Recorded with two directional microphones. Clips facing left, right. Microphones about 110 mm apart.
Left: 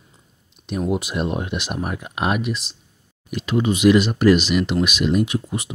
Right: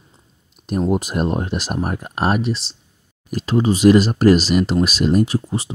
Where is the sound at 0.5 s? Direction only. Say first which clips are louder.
Right 4 dB; 40° right (ahead or behind).